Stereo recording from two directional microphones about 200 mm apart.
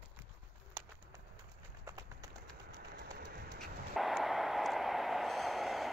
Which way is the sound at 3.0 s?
50° right (ahead or behind).